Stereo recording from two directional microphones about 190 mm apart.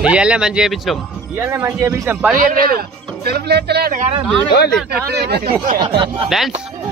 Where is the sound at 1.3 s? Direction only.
15° right (ahead or behind).